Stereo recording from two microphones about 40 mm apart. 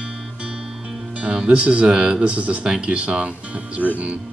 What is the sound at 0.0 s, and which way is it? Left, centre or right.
Music, right.